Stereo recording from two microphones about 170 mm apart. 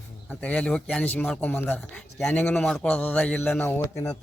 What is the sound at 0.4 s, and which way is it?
A man's voice, 5° left (ahead or behind).